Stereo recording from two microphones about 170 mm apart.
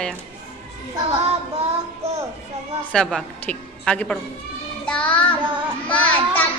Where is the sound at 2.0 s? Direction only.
40° right (ahead or behind).